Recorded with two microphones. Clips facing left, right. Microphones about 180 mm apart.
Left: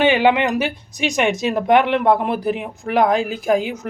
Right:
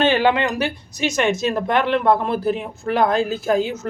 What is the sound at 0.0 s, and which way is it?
A woman's voice, 15° left (ahead or behind).